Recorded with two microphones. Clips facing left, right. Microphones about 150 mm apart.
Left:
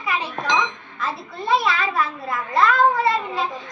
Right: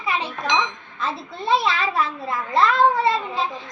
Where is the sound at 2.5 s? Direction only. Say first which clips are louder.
Even; 25° right (ahead or behind).